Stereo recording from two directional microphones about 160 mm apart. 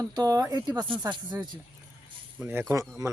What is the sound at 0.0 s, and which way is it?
Speech, 20° right (ahead or behind).